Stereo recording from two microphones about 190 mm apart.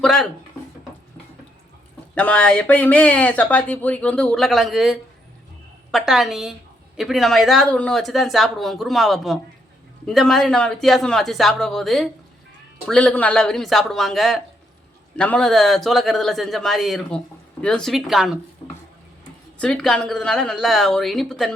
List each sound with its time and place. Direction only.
0.0 s speech: 5° left (ahead or behind)
2.1 s speech: 5° left (ahead or behind)
18.6 s a sound: 25° left (ahead or behind)
19.5 s speech: 5° left (ahead or behind)